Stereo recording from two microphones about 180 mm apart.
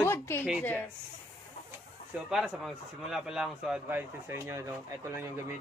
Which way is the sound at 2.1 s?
5° right (ahead or behind).